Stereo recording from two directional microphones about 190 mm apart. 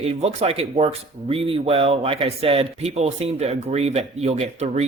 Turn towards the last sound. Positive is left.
turn(degrees=-35)  # may be behind; listen again after turning